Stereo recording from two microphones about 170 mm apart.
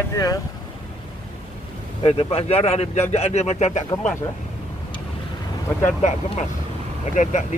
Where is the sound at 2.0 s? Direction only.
35° left (ahead or behind).